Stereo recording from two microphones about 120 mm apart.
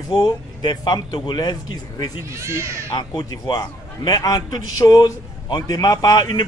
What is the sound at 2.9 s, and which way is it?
A man's voice, 35° left (ahead or behind).